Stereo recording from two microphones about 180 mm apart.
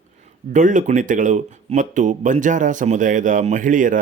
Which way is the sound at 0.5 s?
45° right (ahead or behind).